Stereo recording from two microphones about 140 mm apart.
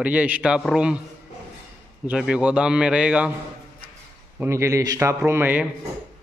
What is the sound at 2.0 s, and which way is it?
A man's voice, 5° right (ahead or behind).